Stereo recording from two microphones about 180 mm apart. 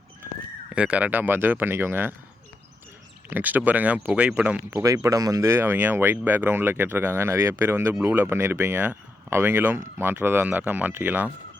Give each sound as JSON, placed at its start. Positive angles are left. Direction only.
{"t": 0.7, "sound": "speech", "side_deg": -5}
{"t": 3.2, "sound": "speech", "side_deg": -10}
{"t": 4.8, "sound": "speech", "side_deg": -20}